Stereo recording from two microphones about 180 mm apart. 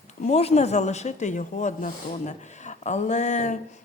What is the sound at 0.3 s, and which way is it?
Speech, 35° left (ahead or behind).